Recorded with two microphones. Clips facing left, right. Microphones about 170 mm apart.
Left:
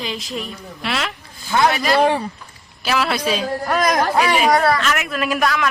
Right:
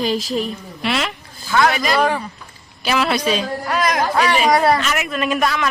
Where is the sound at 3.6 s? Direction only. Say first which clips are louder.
Left 2 dB; 45° left (ahead or behind).